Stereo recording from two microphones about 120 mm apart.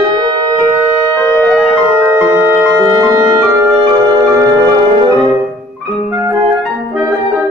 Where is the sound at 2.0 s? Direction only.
15° right (ahead or behind).